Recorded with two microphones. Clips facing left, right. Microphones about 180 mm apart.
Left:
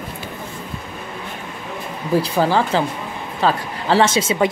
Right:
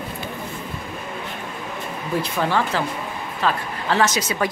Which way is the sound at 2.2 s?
35° left (ahead or behind).